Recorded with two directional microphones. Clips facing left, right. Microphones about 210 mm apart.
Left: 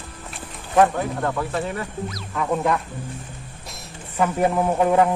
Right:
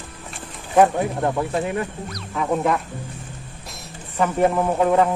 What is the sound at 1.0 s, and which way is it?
Speech, 20° right (ahead or behind).